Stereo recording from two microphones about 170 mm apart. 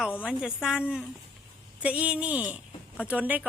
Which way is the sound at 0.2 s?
5° right (ahead or behind).